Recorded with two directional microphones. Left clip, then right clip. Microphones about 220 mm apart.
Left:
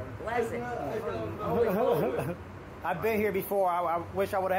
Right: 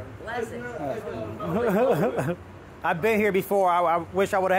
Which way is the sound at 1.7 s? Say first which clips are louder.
Right 5 dB; 65° right (ahead or behind).